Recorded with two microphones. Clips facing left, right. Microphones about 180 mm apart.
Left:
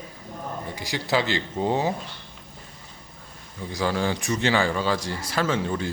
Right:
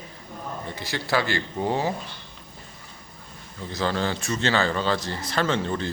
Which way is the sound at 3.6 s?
10° left (ahead or behind).